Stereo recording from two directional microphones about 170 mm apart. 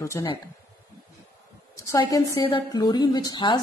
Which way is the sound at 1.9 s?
20° left (ahead or behind).